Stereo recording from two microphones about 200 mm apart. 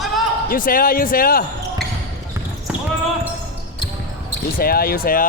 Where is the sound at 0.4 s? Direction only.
45° left (ahead or behind).